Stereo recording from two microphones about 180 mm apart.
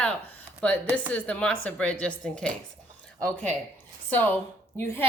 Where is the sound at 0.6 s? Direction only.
5° left (ahead or behind).